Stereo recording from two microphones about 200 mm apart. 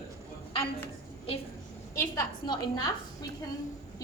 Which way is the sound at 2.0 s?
20° left (ahead or behind).